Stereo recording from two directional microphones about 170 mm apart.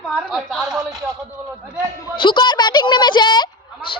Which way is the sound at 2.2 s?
30° left (ahead or behind).